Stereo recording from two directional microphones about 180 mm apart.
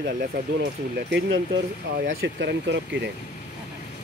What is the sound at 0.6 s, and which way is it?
Speech, 80° right.